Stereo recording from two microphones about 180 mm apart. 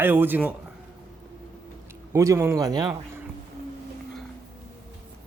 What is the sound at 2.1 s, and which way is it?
Speech, 15° right (ahead or behind).